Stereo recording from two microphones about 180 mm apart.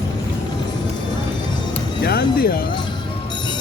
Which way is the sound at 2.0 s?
65° left (ahead or behind).